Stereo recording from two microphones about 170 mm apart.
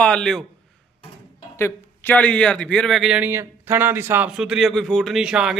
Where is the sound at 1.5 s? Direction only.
15° left (ahead or behind).